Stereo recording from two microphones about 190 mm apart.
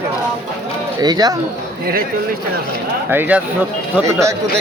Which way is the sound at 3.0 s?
10° right (ahead or behind).